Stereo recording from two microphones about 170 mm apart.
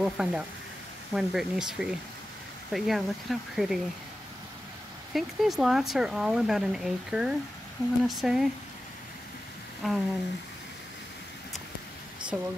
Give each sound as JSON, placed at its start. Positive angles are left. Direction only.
{"t": 0.0, "sound": "speech", "side_deg": -5}
{"t": 5.1, "sound": "speech", "side_deg": 0}
{"t": 9.8, "sound": "speech", "side_deg": 0}
{"t": 12.3, "sound": "speech", "side_deg": 0}